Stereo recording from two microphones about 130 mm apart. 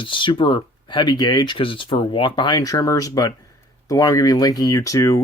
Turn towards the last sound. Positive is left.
turn(degrees=25)  # may be behind; listen again after turning